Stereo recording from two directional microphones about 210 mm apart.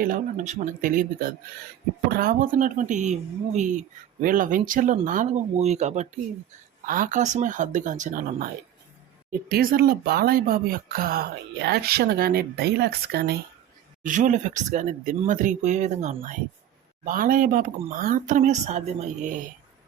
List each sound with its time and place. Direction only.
0.0 s speech: 40° right (ahead or behind)
9.5 s speech: 45° right (ahead or behind)
14.0 s speech: 35° right (ahead or behind)